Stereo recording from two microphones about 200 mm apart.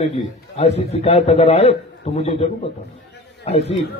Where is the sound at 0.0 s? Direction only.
30° left (ahead or behind).